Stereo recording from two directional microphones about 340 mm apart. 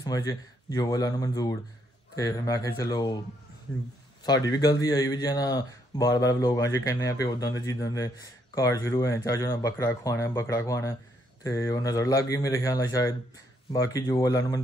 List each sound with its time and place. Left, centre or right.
0.0 s speech: centre
4.2 s speech: centre